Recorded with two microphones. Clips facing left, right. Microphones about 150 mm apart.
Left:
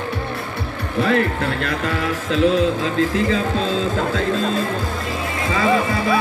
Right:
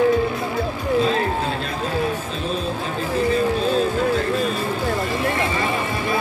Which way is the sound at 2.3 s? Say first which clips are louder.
Left 8 dB; 90° left.